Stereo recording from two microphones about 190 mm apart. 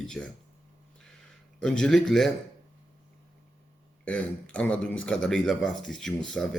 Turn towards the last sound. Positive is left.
turn(degrees=5)  # may be behind; listen again after turning